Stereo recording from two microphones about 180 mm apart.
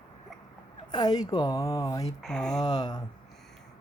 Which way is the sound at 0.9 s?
25° left (ahead or behind).